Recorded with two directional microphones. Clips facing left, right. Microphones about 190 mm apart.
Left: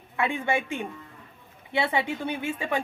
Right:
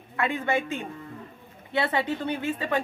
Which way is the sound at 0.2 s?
15° left (ahead or behind).